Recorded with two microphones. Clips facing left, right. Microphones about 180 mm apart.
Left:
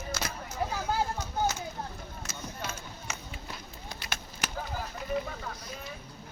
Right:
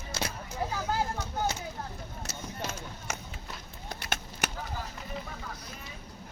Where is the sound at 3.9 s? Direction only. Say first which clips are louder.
Right 4 dB; 60° right (ahead or behind).